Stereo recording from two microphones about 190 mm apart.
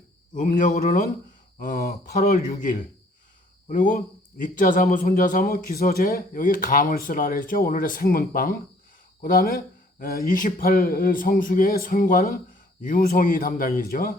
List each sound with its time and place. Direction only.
0.3 s speech: 45° left (ahead or behind)